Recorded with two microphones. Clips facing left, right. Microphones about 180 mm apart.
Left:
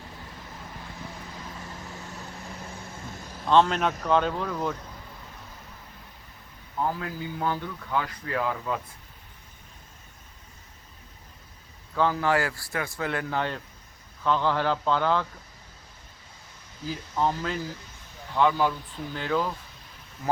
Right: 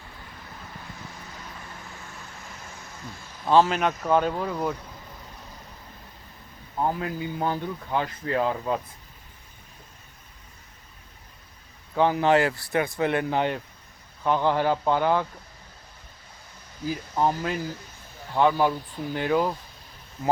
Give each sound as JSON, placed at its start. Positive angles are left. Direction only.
{"t": 2.6, "sound": "vehicle", "side_deg": 30}
{"t": 3.5, "sound": "speech", "side_deg": -5}
{"t": 6.7, "sound": "speech", "side_deg": -20}
{"t": 11.9, "sound": "speech", "side_deg": -20}
{"t": 17.2, "sound": "speech", "side_deg": -15}